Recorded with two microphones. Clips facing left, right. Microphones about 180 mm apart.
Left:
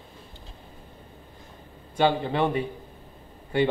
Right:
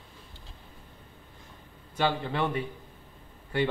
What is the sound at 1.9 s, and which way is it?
Speech, 20° left (ahead or behind).